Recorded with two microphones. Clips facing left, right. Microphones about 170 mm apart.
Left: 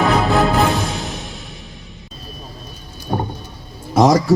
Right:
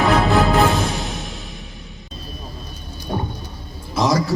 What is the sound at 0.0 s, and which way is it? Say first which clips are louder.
Music: left 1 dB; centre (ahead or behind).